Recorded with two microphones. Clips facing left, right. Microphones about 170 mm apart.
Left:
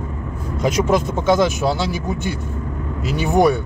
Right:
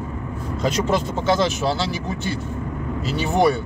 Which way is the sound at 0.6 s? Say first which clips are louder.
Left 4 dB; 15° left (ahead or behind).